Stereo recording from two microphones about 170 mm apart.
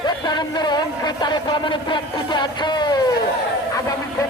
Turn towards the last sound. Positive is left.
turn(degrees=25)  # may be behind; listen again after turning